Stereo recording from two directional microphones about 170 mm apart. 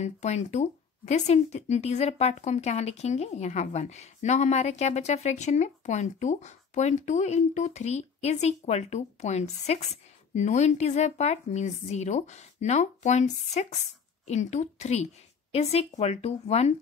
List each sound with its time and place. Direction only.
0.0 s speech: 40° left (ahead or behind)